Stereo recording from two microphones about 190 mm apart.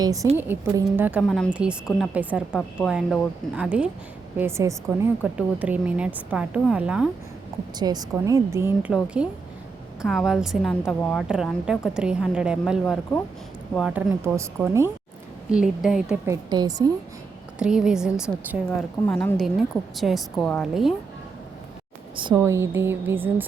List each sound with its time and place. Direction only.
0.0 s a woman's voice: 20° right (ahead or behind)
7.8 s a woman's voice: 20° right (ahead or behind); by 16.1 s 5° right (ahead or behind)
16.2 s a woman's voice: 20° right (ahead or behind)
17.6 s a woman's voice: 5° right (ahead or behind)
22.1 s a woman's voice: 25° right (ahead or behind)